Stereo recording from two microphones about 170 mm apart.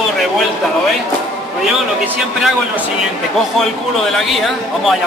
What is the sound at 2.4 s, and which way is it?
Speech, 5° right (ahead or behind).